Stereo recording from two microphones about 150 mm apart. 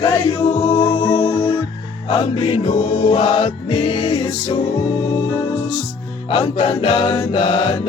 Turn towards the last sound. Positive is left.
turn(degrees=35)  # may be behind; listen again after turning